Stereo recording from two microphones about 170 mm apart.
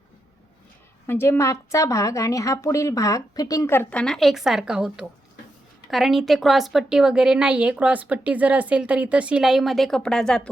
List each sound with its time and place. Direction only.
1.0 s a woman's voice: 15° left (ahead or behind)